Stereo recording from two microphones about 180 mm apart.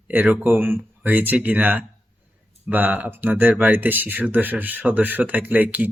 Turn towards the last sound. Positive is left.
turn(degrees=-10)  # may be behind; listen again after turning